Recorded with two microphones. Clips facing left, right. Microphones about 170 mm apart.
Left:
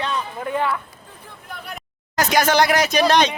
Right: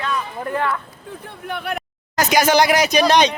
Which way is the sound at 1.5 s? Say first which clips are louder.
Right 9 dB; 70° right (ahead or behind).